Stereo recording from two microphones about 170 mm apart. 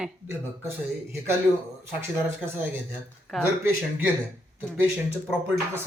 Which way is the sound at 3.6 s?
10° right (ahead or behind).